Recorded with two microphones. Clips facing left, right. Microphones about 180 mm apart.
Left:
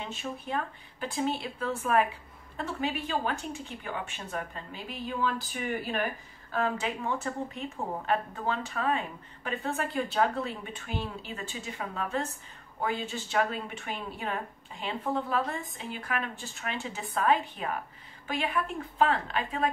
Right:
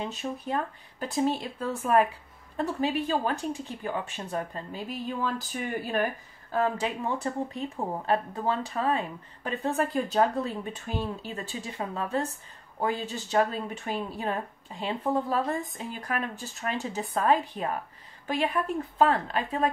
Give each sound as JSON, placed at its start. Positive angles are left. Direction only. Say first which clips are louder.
{"t": 0.0, "sound": "speech", "louder": "right 4 dB", "side_deg": -40}
{"t": 2.5, "sound": "speech", "louder": "right 5 dB", "side_deg": -35}